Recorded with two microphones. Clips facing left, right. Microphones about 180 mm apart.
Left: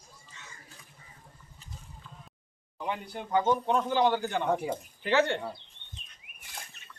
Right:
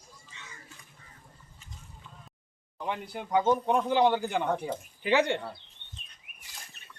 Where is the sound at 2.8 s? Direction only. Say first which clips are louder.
Even; centre (ahead or behind).